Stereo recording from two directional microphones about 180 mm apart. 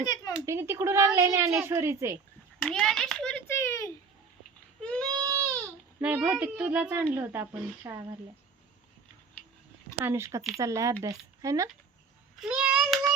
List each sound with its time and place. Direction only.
0.0 s speech: 25° left (ahead or behind)
0.4 s speech: 15° right (ahead or behind)
2.6 s a child's voice: 5° left (ahead or behind)
4.8 s a sound: 5° left (ahead or behind)
5.0 s goat: 20° right (ahead or behind)
6.0 s speech: 5° right (ahead or behind)
10.0 s speech: 15° right (ahead or behind)
12.4 s a child's voice: 5° right (ahead or behind)